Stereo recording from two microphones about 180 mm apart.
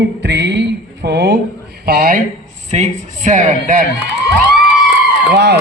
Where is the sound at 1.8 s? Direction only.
55° right (ahead or behind).